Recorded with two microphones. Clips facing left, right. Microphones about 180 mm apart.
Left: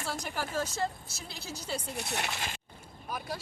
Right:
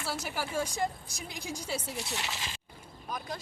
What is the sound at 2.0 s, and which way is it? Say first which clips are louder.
Speech: left 2 dB; 60° left (ahead or behind).